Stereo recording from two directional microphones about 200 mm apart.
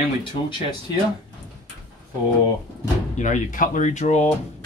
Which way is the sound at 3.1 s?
35° left (ahead or behind).